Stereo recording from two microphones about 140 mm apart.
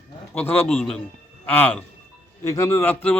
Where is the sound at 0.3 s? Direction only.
15° left (ahead or behind).